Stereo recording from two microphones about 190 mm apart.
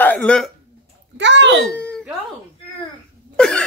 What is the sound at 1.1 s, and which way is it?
Speech, 70° right (ahead or behind).